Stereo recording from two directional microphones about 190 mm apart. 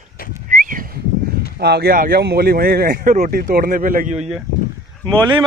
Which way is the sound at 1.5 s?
60° right (ahead or behind).